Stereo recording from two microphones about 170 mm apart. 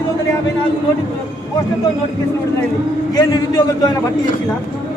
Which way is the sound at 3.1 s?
20° left (ahead or behind).